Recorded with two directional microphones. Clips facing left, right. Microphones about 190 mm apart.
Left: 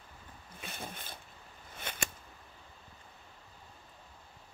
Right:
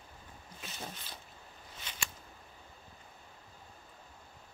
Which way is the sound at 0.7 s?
55° left (ahead or behind).